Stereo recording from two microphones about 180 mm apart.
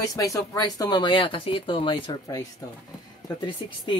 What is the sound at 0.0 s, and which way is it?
Speech, 20° left (ahead or behind).